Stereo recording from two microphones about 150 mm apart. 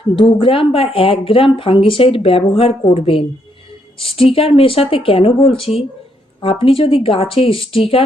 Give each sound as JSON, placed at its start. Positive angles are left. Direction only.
{"t": 0.2, "sound": "speech", "side_deg": 35}